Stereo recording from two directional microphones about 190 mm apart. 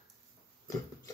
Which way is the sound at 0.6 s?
20° left (ahead or behind).